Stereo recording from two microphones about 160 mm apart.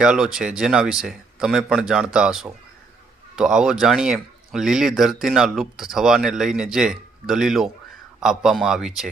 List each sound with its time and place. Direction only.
0.0 s speech: 5° right (ahead or behind)